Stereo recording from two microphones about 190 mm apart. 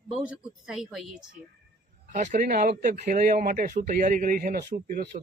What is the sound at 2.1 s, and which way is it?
Speech, 45° right (ahead or behind).